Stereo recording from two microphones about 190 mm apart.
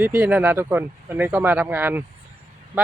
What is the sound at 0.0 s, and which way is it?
Speech, 5° right (ahead or behind).